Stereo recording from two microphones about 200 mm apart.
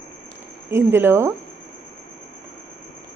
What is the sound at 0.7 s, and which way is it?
Speech, 10° right (ahead or behind).